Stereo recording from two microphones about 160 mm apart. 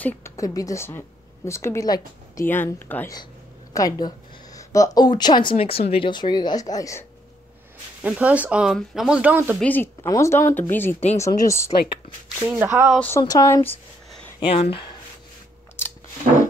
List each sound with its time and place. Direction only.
0.0 s a woman's voice: 20° left (ahead or behind)
3.7 s speech: 20° left (ahead or behind)
8.0 s speech: 10° right (ahead or behind)
9.6 s speech: 10° left (ahead or behind)
12.4 s speech: 10° right (ahead or behind)
13.2 s speech: 20° left (ahead or behind)
14.4 s speech: 35° left (ahead or behind)